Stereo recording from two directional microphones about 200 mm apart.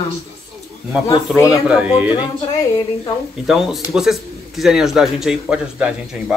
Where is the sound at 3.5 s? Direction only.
Centre (ahead or behind).